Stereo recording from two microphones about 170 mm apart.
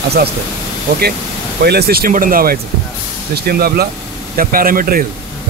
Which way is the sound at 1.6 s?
70° right (ahead or behind).